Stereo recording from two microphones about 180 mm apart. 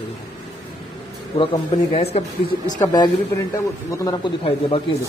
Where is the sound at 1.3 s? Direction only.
30° left (ahead or behind).